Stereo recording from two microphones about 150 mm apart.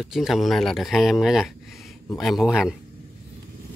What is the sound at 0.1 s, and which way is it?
Speech, centre (ahead or behind).